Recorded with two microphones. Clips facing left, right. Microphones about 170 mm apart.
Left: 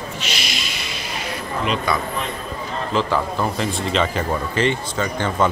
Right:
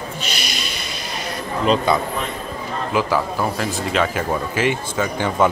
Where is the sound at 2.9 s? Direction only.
5° right (ahead or behind).